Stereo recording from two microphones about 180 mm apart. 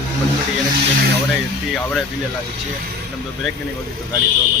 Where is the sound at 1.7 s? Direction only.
5° left (ahead or behind).